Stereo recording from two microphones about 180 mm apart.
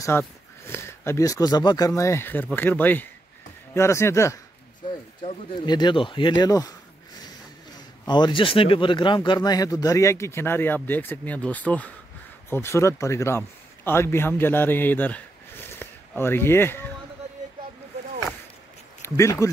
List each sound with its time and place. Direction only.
0.1 s speech: 10° left (ahead or behind)
7.7 s a man's voice: 25° left (ahead or behind)
19.0 s speech: 15° left (ahead or behind)